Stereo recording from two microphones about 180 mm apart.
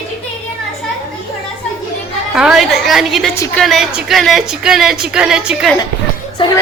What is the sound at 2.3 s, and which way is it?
Speech, 5° right (ahead or behind).